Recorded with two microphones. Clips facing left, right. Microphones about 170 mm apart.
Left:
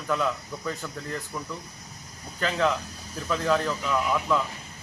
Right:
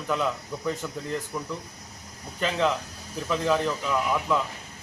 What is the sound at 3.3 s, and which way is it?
Speech, 15° right (ahead or behind).